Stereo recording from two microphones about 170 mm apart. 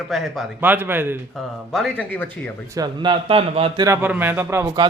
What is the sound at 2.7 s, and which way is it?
A man's voice, 25° right (ahead or behind).